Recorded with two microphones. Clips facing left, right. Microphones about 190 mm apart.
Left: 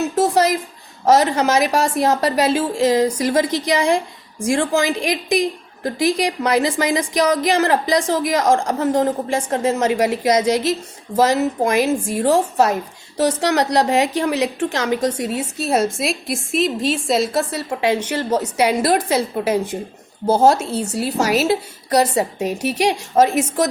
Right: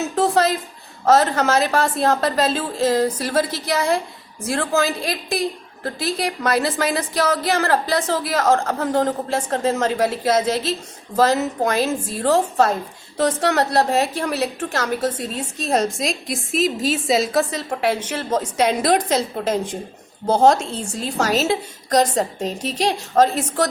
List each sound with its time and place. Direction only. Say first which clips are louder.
1.0 s a woman's voice: left 1 dB; 10° left (ahead or behind)
20.7 s a woman's voice: left 6 dB; 70° left (ahead or behind)
21.0 s a woman's voice: left 2 dB; 10° left (ahead or behind)